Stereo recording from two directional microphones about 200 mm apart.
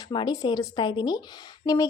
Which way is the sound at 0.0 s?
20° left (ahead or behind).